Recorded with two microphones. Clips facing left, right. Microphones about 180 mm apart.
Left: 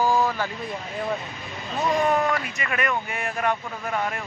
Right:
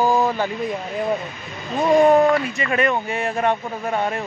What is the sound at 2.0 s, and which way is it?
Speech, 35° right (ahead or behind).